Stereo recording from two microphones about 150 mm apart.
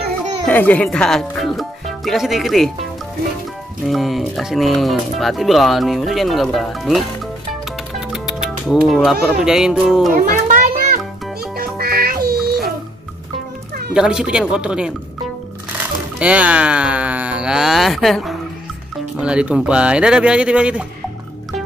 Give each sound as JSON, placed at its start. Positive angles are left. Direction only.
{"t": 0.5, "sound": "speech", "side_deg": 10}
{"t": 8.1, "sound": "speech", "side_deg": -5}
{"t": 10.1, "sound": "music", "side_deg": -70}
{"t": 11.5, "sound": "music", "side_deg": -85}
{"t": 13.9, "sound": "speech", "side_deg": -5}